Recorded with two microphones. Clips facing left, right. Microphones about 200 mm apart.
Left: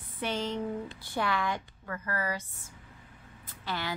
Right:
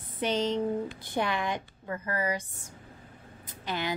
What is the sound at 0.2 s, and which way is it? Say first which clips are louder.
A woman's voice: right 5 dB; 20° right (ahead or behind).